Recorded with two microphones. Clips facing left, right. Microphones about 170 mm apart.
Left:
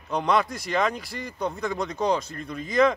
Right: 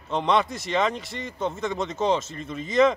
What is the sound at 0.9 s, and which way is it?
Speech, 25° right (ahead or behind).